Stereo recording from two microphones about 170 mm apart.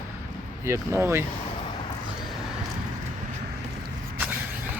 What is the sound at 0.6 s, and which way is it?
Speech, 15° right (ahead or behind).